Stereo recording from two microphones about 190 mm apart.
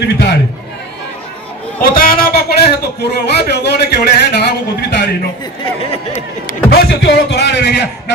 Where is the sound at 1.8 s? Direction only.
50° left (ahead or behind).